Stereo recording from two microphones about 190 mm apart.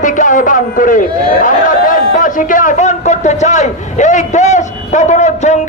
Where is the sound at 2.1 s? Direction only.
45° left (ahead or behind).